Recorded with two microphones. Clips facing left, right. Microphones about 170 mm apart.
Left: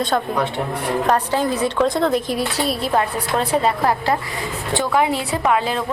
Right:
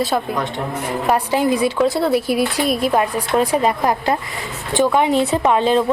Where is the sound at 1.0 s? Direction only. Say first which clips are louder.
Right 3 dB; 10° right (ahead or behind).